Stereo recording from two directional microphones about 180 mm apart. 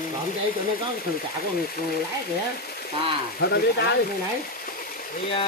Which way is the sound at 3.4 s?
75° left (ahead or behind).